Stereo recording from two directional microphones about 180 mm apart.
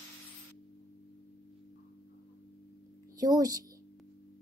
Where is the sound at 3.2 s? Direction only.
20° right (ahead or behind).